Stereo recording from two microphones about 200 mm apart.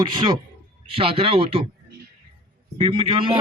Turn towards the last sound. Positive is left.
turn(degrees=-25)  # may be behind; listen again after turning